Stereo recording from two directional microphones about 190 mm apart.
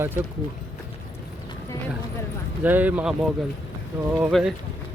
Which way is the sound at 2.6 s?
10° right (ahead or behind).